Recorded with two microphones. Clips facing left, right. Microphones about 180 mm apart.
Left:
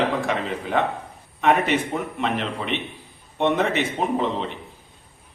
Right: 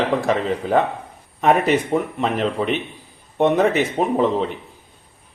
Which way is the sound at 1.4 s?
40° right (ahead or behind).